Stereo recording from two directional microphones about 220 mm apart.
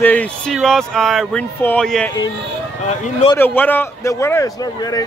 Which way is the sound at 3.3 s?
10° left (ahead or behind).